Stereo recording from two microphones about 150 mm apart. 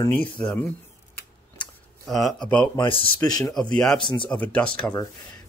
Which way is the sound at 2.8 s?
35° left (ahead or behind).